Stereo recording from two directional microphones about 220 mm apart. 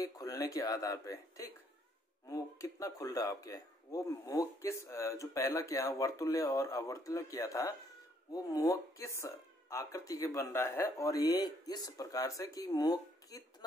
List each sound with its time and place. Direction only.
0.0 s speech: 15° left (ahead or behind)